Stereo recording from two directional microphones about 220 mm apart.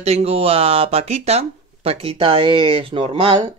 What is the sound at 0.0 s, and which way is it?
Speech, 30° right (ahead or behind).